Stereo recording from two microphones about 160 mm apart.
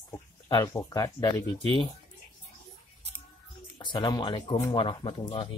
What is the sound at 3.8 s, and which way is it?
Speech, 30° left (ahead or behind).